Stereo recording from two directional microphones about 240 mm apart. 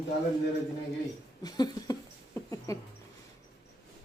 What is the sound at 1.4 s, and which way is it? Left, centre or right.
Speech, centre.